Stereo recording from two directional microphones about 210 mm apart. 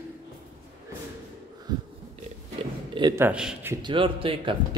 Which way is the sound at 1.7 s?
20° right (ahead or behind).